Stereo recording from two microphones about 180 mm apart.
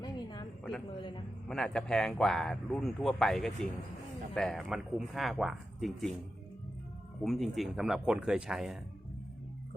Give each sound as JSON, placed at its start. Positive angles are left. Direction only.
{"t": 0.0, "sound": "a sound", "side_deg": 25}
{"t": 1.5, "sound": "a man's voice", "side_deg": 5}
{"t": 7.2, "sound": "a man's voice", "side_deg": 0}